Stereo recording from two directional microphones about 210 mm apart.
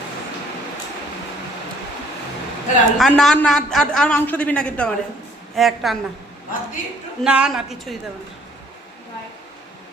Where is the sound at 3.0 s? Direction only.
Centre (ahead or behind).